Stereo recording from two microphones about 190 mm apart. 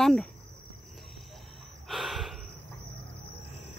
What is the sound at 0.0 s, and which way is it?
Insect, 5° left (ahead or behind).